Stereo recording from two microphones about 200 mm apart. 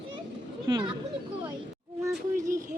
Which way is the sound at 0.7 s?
25° right (ahead or behind).